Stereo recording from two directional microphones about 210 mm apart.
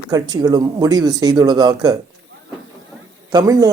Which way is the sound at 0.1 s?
20° right (ahead or behind).